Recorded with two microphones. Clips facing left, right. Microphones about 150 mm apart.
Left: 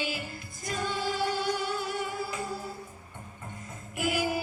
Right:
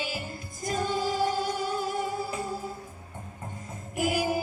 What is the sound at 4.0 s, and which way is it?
Music, 40° right (ahead or behind).